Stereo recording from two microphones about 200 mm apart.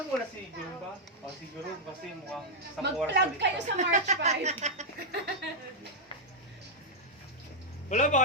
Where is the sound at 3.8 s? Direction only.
35° right (ahead or behind).